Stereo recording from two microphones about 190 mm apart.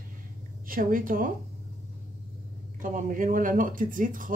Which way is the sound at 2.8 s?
45° right (ahead or behind).